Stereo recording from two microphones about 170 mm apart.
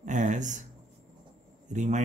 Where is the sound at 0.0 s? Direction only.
45° right (ahead or behind).